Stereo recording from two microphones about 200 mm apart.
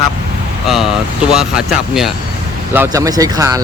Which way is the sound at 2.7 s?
15° right (ahead or behind).